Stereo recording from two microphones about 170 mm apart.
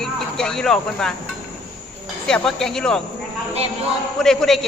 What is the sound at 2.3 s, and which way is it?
Speech, centre (ahead or behind).